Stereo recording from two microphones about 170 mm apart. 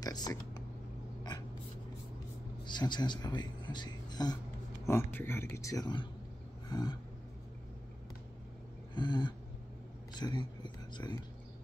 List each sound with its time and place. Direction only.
0.0 s speech: 25° left (ahead or behind)
2.6 s speech: 25° left (ahead or behind)
4.8 s speech: 15° left (ahead or behind)
6.7 s a sound: 25° left (ahead or behind)
8.9 s speech: 25° left (ahead or behind)